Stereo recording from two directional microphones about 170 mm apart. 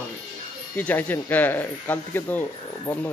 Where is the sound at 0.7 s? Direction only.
10° left (ahead or behind).